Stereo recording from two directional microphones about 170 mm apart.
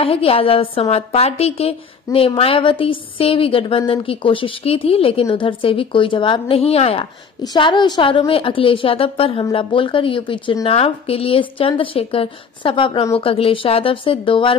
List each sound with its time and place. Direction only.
0.0 s a woman's voice: 35° left (ahead or behind)